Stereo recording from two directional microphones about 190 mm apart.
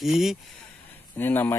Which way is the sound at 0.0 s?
Centre (ahead or behind).